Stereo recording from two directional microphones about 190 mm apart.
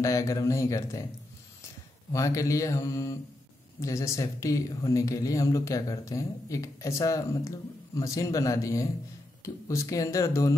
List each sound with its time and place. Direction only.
0.0 s speech: 15° left (ahead or behind)
2.1 s speech: 15° left (ahead or behind)